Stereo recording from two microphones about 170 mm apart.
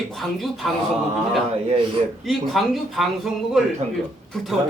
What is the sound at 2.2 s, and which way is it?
A man's voice, centre (ahead or behind).